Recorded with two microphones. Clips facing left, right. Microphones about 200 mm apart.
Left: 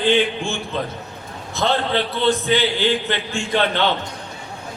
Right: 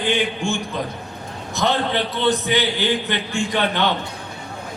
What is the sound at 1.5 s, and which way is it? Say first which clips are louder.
A man's voice: left 1 dB; 20° right (ahead or behind).